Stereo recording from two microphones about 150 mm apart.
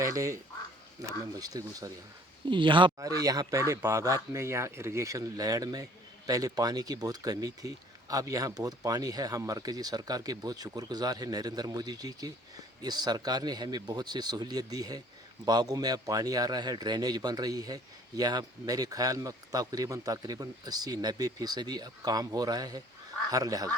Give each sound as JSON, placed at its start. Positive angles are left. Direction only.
{"t": 0.0, "sound": "speech", "side_deg": -20}